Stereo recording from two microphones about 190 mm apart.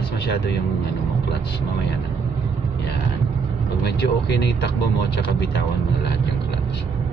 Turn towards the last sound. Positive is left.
turn(degrees=60)  # may be behind; listen again after turning